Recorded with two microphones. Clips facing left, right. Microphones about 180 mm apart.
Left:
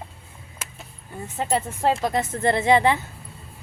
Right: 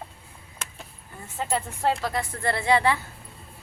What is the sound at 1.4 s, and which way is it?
A woman's voice, 20° left (ahead or behind).